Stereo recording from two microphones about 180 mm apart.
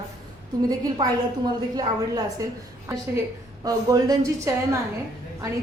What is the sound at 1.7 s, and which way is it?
A woman's voice, 20° right (ahead or behind).